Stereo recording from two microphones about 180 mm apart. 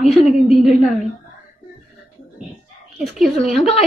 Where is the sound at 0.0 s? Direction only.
Centre (ahead or behind).